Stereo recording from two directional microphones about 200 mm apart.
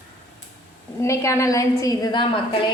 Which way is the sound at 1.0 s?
15° left (ahead or behind).